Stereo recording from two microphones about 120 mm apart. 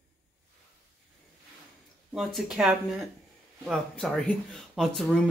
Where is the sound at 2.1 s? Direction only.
5° right (ahead or behind).